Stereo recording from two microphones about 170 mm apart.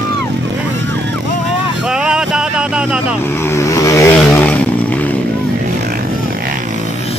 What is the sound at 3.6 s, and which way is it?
Vehicle, 20° left (ahead or behind).